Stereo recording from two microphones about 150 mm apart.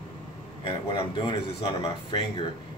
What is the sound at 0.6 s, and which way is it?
Speech, 35° left (ahead or behind).